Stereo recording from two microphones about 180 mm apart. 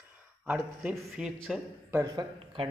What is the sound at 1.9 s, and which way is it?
Speech, 20° right (ahead or behind).